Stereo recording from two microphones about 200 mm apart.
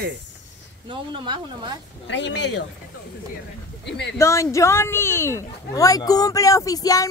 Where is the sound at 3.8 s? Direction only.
60° left (ahead or behind).